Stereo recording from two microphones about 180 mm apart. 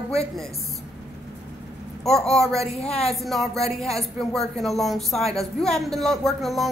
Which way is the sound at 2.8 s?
35° left (ahead or behind).